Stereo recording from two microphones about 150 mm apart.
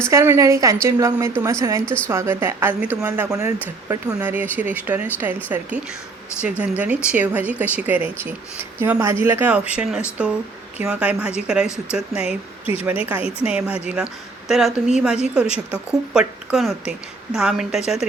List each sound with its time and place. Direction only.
0.1 s a woman's voice: 20° right (ahead or behind)
1.8 s a woman's voice: 10° left (ahead or behind)
2.0 s speech: 15° right (ahead or behind)
6.4 s speech: 10° right (ahead or behind)